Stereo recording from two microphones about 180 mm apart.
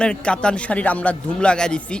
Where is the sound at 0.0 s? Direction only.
5° left (ahead or behind).